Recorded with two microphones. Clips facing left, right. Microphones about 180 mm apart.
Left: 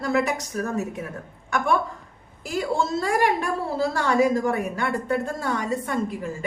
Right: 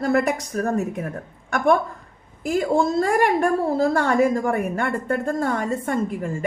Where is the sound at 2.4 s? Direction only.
50° right (ahead or behind).